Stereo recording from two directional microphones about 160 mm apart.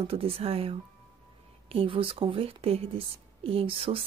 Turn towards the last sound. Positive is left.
turn(degrees=-35)  # may be behind; listen again after turning